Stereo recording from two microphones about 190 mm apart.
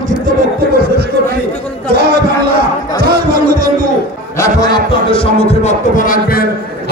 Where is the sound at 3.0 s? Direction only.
50° right (ahead or behind).